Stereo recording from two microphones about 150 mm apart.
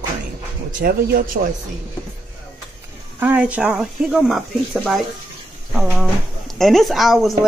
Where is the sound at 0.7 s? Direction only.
75° right (ahead or behind).